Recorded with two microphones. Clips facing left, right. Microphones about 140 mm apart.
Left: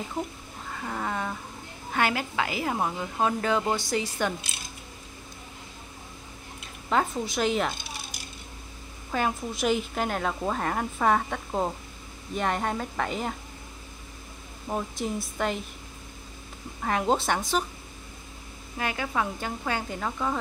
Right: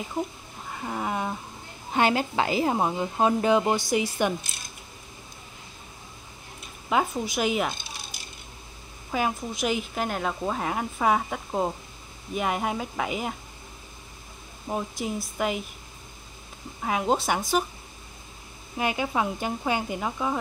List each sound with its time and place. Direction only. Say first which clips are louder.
0.7 s a sound: right 2 dB; 15° right (ahead or behind)
1.9 s a woman's voice: right 4 dB; 25° right (ahead or behind)
6.9 s speech: right 1 dB; 5° right (ahead or behind)
9.1 s speech: right 1 dB; centre (ahead or behind)
14.7 s speech: even; 5° right (ahead or behind)
16.8 s speech: even; 5° right (ahead or behind)
18.8 s speech: right 3 dB; 20° right (ahead or behind)